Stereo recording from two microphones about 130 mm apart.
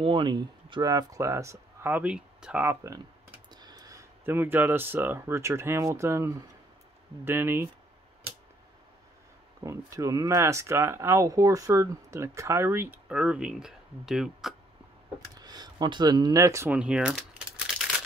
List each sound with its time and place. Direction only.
0.0 s speech: 40° right (ahead or behind); by 7.7 s 15° right (ahead or behind)
9.6 s speech: 25° right (ahead or behind); by 14.5 s 5° right (ahead or behind)
15.3 s speech: 30° right (ahead or behind)
16.7 s a sound: 10° right (ahead or behind)